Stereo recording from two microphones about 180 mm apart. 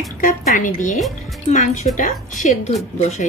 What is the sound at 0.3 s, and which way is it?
Speech, 45° left (ahead or behind).